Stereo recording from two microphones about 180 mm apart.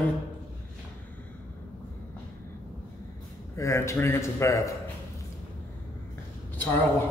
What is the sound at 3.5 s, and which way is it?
A man's voice, 15° left (ahead or behind).